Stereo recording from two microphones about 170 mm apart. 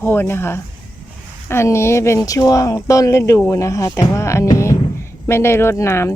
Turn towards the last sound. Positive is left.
turn(degrees=15)  # may be behind; listen again after turning